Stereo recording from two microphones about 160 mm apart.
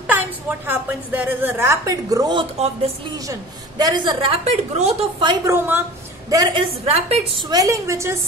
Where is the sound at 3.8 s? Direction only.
25° right (ahead or behind); by 4.9 s 40° right (ahead or behind).